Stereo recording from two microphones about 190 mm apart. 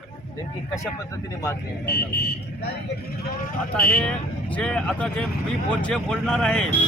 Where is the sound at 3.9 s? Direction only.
10° left (ahead or behind).